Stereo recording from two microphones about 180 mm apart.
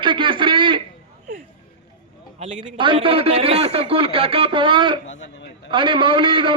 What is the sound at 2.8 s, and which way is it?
A man's voice, 30° right (ahead or behind).